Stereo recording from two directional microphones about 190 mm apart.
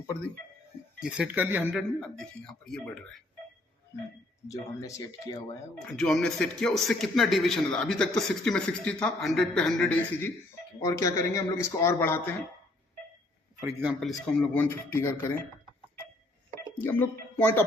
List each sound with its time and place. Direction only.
0.9 s speech: 5° right (ahead or behind)
1.7 s speech: centre (ahead or behind)
4.4 s speech: 15° left (ahead or behind)
5.8 s speech: centre (ahead or behind)
13.6 s speech: 15° right (ahead or behind)
14.0 s speech: 5° left (ahead or behind)
16.8 s speech: 10° left (ahead or behind)